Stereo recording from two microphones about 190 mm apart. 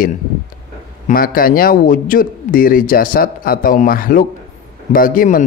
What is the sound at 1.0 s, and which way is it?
A man's voice, 50° left (ahead or behind).